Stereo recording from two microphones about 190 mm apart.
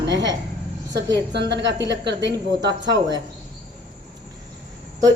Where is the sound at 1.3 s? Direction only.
65° right (ahead or behind).